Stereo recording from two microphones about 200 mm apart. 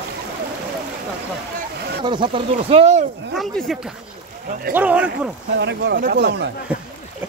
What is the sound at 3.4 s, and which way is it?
Speech, centre (ahead or behind).